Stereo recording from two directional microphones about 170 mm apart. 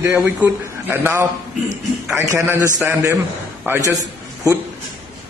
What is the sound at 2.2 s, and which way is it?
A man's voice, 20° right (ahead or behind).